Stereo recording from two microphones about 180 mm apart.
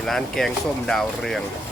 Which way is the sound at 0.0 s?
Centre (ahead or behind).